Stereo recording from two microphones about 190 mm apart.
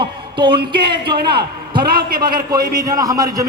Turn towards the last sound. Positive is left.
turn(degrees=-20)  # may be behind; listen again after turning